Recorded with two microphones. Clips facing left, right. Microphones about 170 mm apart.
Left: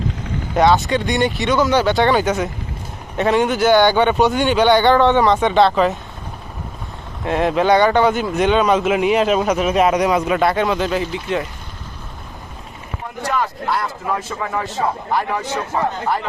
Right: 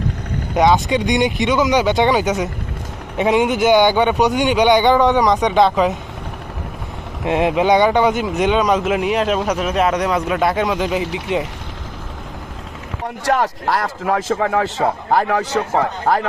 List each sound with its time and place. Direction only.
0.6 s speech: 15° right (ahead or behind)
7.3 s a man's voice: 15° right (ahead or behind)
13.2 s a man's voice: 85° right